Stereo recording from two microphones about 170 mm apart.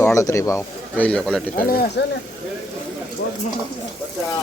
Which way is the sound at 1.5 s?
65° left (ahead or behind).